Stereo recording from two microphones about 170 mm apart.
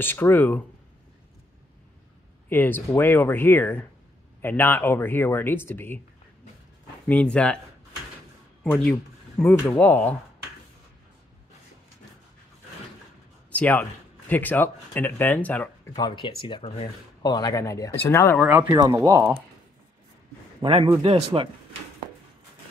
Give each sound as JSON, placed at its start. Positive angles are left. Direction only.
{"t": 0.0, "sound": "speech", "side_deg": 10}
{"t": 2.5, "sound": "speech", "side_deg": 10}
{"t": 7.1, "sound": "speech", "side_deg": 5}
{"t": 9.4, "sound": "speech", "side_deg": 10}
{"t": 13.5, "sound": "a man's voice", "side_deg": 10}
{"t": 15.9, "sound": "speech", "side_deg": 25}
{"t": 18.4, "sound": "speech", "side_deg": -10}
{"t": 20.6, "sound": "a man's voice", "side_deg": -30}